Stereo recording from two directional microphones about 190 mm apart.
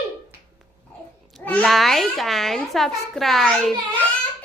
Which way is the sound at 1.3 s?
5° left (ahead or behind).